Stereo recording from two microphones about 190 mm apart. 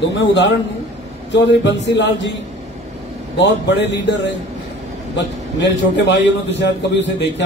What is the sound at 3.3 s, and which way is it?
A man's voice, 65° left (ahead or behind).